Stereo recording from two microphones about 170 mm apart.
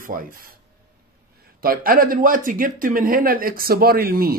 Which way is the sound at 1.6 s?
60° right (ahead or behind).